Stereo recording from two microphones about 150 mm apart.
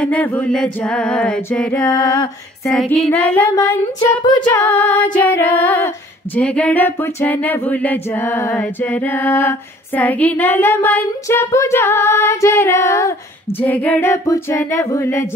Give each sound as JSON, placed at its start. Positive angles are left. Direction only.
{"t": 0.0, "sound": "female singing", "side_deg": 10}
{"t": 1.8, "sound": "music", "side_deg": 20}
{"t": 2.6, "sound": "female singing", "side_deg": 5}
{"t": 4.2, "sound": "music", "side_deg": 30}
{"t": 4.6, "sound": "female singing", "side_deg": 15}